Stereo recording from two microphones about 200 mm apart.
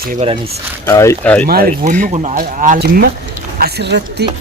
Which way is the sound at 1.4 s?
45° right (ahead or behind).